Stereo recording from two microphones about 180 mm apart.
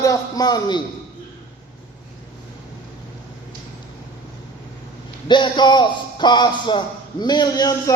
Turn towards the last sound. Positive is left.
turn(degrees=20)  # may be behind; listen again after turning